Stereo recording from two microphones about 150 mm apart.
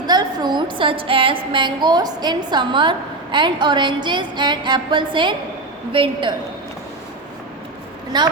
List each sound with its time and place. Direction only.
0.0 s a woman's voice: 25° right (ahead or behind)
3.3 s music: 30° right (ahead or behind)
8.1 s a woman's voice: 30° right (ahead or behind)